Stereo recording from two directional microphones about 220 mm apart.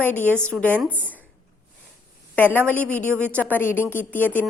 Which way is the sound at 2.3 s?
10° left (ahead or behind).